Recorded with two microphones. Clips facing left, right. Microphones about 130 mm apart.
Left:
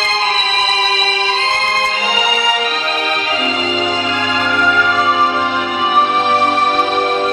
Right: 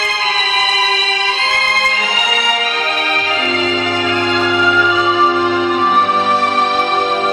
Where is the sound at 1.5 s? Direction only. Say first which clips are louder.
Left 1 dB; 25° left (ahead or behind).